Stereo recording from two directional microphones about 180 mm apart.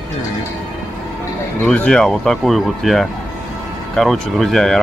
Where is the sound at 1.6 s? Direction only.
5° left (ahead or behind).